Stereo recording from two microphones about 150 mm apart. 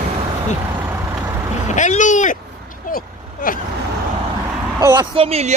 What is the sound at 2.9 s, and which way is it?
Vehicle, 70° left (ahead or behind).